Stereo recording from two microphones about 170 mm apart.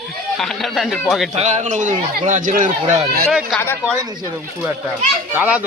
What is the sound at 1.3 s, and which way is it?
Speech, 40° right (ahead or behind).